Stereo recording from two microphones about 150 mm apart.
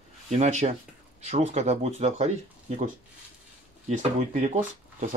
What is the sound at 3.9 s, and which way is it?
Speech, 55° right (ahead or behind).